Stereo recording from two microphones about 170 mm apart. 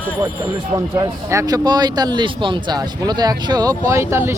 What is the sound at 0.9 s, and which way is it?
Speech, 20° right (ahead or behind).